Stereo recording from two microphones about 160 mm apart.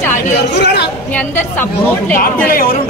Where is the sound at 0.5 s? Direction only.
90° left.